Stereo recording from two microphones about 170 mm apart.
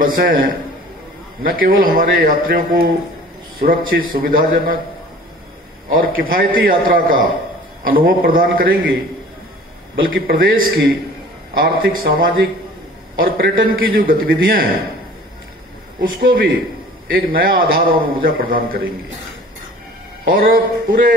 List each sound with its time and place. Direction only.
0.0 s a man's voice: 55° right (ahead or behind)
5.9 s a man's voice: 55° right (ahead or behind)
10.0 s a man's voice: 60° right (ahead or behind)
16.0 s a man's voice: 55° right (ahead or behind)
20.2 s a man's voice: 60° right (ahead or behind)